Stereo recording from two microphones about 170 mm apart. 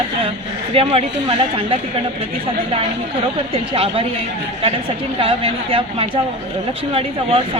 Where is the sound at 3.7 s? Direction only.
35° right (ahead or behind).